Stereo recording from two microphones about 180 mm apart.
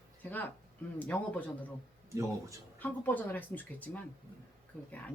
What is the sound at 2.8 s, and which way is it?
Speech, 10° left (ahead or behind).